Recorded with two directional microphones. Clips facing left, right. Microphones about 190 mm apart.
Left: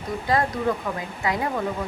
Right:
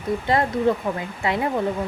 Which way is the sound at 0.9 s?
20° right (ahead or behind).